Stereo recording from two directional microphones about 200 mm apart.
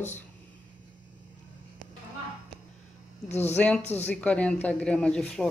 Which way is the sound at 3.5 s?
5° left (ahead or behind).